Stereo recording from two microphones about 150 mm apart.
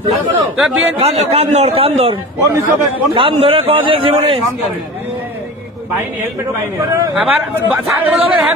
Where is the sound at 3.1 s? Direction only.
35° right (ahead or behind).